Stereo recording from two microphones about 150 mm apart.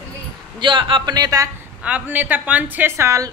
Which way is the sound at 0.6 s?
30° right (ahead or behind).